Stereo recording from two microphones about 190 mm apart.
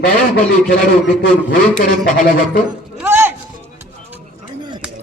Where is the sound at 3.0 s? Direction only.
10° right (ahead or behind).